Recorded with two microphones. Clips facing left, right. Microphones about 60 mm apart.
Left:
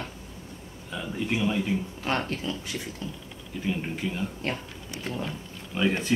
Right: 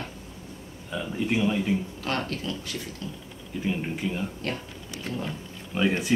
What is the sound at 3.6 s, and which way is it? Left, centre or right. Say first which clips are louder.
Speech: right 1 dB; centre.